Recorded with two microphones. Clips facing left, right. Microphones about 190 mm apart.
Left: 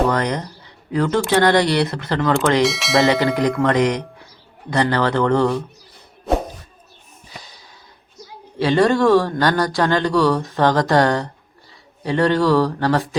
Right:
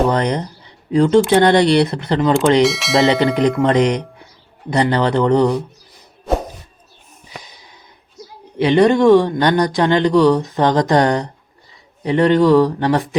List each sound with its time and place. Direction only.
0.1 s speech: 20° right (ahead or behind)
2.6 s speech: centre (ahead or behind)
3.6 s speech: 20° right (ahead or behind)
8.5 s speech: 20° right (ahead or behind)